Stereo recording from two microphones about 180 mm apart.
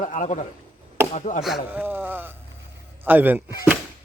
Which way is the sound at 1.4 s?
5° right (ahead or behind).